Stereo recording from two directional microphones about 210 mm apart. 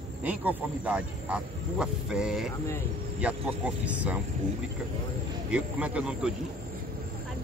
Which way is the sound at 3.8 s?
5° right (ahead or behind).